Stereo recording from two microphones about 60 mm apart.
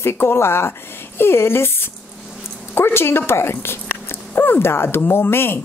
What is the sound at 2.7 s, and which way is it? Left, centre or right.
Speech, left.